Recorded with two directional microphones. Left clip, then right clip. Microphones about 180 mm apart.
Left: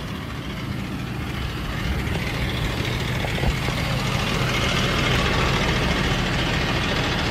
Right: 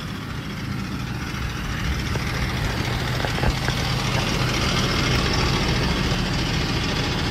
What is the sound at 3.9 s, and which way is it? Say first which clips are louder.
Vehicle: even; 35° right (ahead or behind).